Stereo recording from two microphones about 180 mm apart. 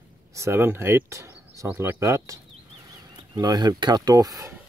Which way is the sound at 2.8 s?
25° right (ahead or behind).